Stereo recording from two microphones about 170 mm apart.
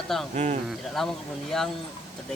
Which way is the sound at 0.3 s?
45° right (ahead or behind).